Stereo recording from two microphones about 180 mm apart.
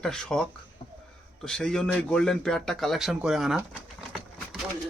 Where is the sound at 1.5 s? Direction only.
5° left (ahead or behind).